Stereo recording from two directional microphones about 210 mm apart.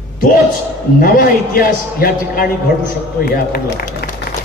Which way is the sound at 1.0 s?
45° left (ahead or behind).